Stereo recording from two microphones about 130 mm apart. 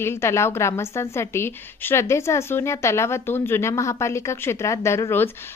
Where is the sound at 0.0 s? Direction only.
20° left (ahead or behind).